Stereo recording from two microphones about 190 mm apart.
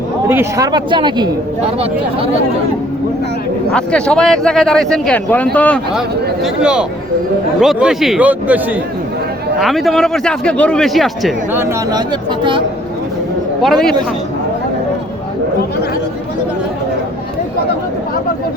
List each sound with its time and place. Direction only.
0.3 s speech: 15° right (ahead or behind)
3.7 s a man's voice: 5° left (ahead or behind)
6.4 s speech: 5° right (ahead or behind)
11.5 s speech: 15° right (ahead or behind)
13.6 s speech: centre (ahead or behind)